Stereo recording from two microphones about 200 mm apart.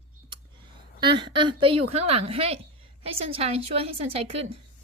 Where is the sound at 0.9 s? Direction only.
25° right (ahead or behind).